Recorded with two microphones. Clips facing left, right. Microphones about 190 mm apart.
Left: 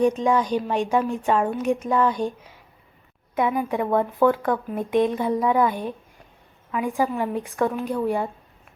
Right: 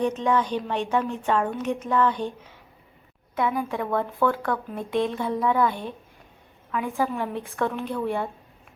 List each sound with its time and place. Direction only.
0.0 s a woman's voice: 10° left (ahead or behind)
3.3 s a woman's voice: 20° left (ahead or behind)